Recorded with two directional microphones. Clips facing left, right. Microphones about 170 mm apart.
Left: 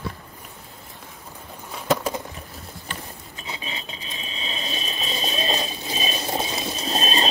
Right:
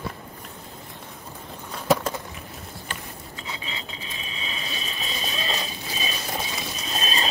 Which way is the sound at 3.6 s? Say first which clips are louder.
Left 1 dB; 20° left (ahead or behind).